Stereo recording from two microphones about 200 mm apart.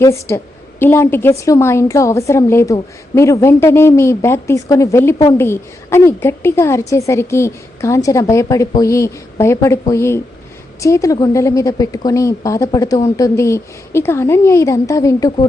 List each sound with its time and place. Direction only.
0.0 s a woman's voice: 15° left (ahead or behind)